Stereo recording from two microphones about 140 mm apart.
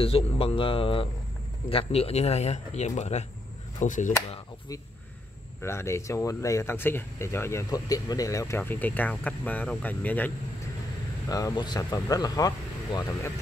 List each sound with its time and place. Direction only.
0.0 s speech: 45° left (ahead or behind)
3.8 s speech: 65° left (ahead or behind)
5.6 s speech: 20° left (ahead or behind)
11.2 s speech: 25° left (ahead or behind)